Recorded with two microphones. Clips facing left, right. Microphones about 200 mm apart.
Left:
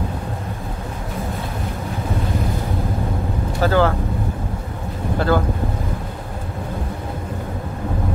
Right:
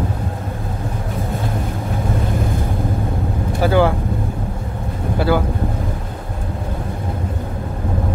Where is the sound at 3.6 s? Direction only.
15° right (ahead or behind).